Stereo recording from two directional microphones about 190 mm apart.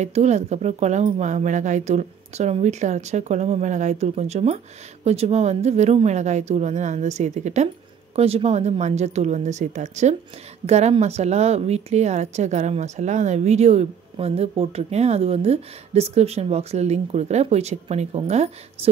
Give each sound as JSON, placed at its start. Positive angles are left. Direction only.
{"t": 0.0, "sound": "a woman's voice", "side_deg": -35}